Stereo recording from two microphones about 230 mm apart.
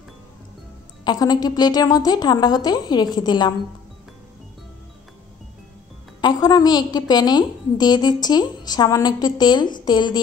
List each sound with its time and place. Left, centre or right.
1.0 s a woman's voice: centre
6.2 s a woman's voice: centre